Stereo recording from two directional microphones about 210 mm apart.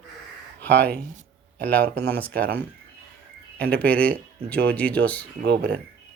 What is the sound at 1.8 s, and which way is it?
Speech, 50° right (ahead or behind).